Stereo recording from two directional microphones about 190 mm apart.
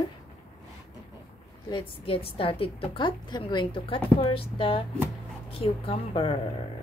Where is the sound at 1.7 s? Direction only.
25° left (ahead or behind).